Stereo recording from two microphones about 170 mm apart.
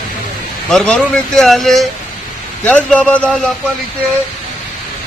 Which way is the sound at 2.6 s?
10° left (ahead or behind).